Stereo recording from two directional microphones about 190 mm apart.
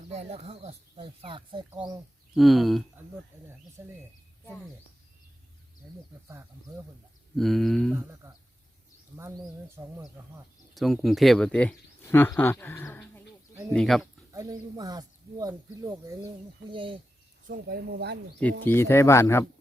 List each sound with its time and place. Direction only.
0.1 s speech: 35° right (ahead or behind)
2.3 s speech: centre (ahead or behind)
3.8 s speech: 10° right (ahead or behind)
4.4 s speech: 5° left (ahead or behind)
7.3 s speech: centre (ahead or behind)
10.8 s speech: centre (ahead or behind)
14.3 s speech: 20° right (ahead or behind)
17.5 s speech: 55° right (ahead or behind)
18.6 s speech: 15° left (ahead or behind)